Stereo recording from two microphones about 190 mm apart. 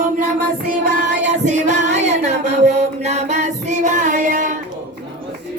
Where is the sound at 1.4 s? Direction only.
40° right (ahead or behind).